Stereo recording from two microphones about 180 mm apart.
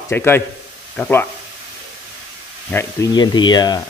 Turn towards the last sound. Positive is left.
turn(degrees=25)  # may be behind; listen again after turning